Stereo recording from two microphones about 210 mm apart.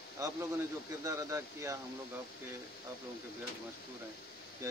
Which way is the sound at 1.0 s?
15° right (ahead or behind).